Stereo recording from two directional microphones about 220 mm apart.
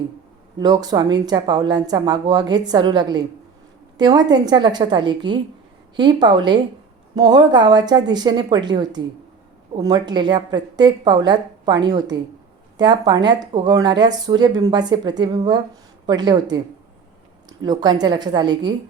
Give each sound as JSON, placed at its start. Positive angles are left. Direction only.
{"t": 0.6, "sound": "speech", "side_deg": -20}
{"t": 17.6, "sound": "speech", "side_deg": -20}